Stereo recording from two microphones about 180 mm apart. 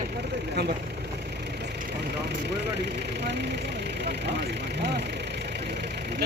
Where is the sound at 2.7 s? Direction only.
70° right (ahead or behind).